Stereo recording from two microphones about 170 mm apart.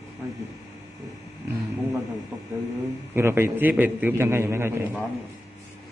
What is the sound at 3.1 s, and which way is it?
A man's voice, 15° right (ahead or behind).